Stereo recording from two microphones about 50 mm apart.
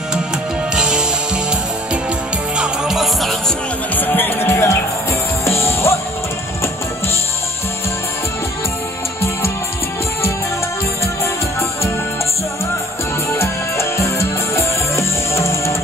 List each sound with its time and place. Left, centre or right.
0.7 s music: centre
2.5 s music: centre
3.0 s music: centre
3.9 s music: left
13.3 s music: left